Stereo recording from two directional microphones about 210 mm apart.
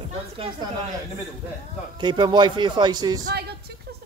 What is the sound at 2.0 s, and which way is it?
A woman's voice, 20° right (ahead or behind).